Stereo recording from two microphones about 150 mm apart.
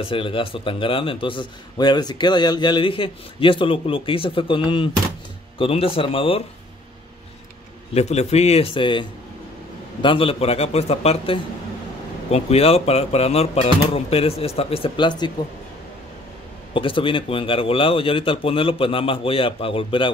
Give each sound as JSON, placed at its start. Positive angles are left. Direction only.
{"t": 0.0, "sound": "a man's voice", "side_deg": 35}
{"t": 7.9, "sound": "a man's voice", "side_deg": 45}
{"t": 10.0, "sound": "a man's voice", "side_deg": 40}
{"t": 16.7, "sound": "a man's voice", "side_deg": 35}